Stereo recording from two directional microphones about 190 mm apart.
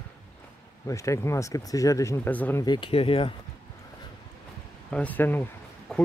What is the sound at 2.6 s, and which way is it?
Speech, 25° left (ahead or behind).